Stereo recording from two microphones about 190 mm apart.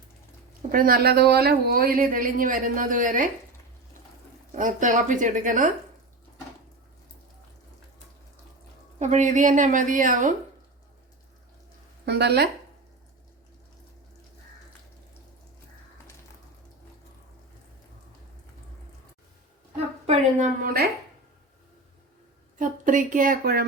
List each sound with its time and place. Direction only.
0.7 s speech: 50° right (ahead or behind)
4.5 s speech: 40° right (ahead or behind)
9.0 s speech: 40° right (ahead or behind)
12.0 s speech: 60° right (ahead or behind)
20.1 s a woman's voice: 40° right (ahead or behind)
22.5 s speech: 45° right (ahead or behind)